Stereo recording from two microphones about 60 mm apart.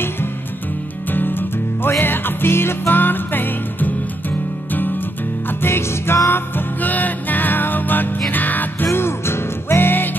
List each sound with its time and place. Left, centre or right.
1.1 s music: left
5.6 s music: left
6.3 s music: left
8.8 s music: left